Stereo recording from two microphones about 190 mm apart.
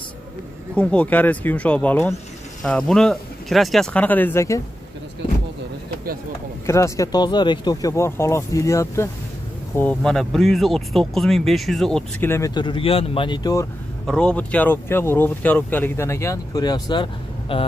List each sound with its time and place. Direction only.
0.7 s speech: 10° left (ahead or behind)
6.6 s speech: 15° left (ahead or behind)
14.0 s speech: 5° left (ahead or behind); by 17.6 s 25° left (ahead or behind)